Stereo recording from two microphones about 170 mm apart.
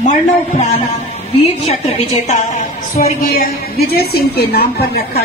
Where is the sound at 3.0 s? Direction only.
50° left (ahead or behind).